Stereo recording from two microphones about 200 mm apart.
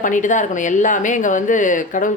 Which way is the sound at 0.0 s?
40° left (ahead or behind).